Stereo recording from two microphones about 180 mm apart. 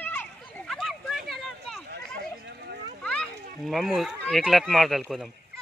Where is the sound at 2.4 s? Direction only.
60° right (ahead or behind).